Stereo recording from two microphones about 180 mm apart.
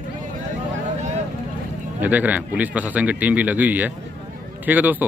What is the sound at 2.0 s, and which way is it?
Speech, 10° right (ahead or behind).